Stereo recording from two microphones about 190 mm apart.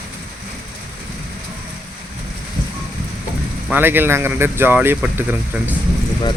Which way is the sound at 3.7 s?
10° right (ahead or behind).